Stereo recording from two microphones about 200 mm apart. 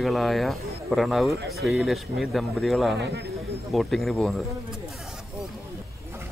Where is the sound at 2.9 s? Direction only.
60° right (ahead or behind).